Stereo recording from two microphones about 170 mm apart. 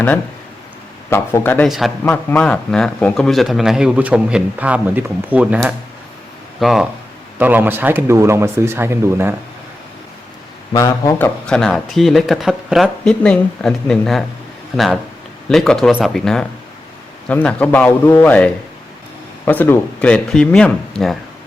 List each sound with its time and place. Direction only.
1.1 s a man's voice: 15° left (ahead or behind)
1.6 s a man's voice: centre (ahead or behind)
10.8 s speech: 20° left (ahead or behind)
11.4 s a man's voice: 5° left (ahead or behind)
15.4 s a man's voice: 5° left (ahead or behind)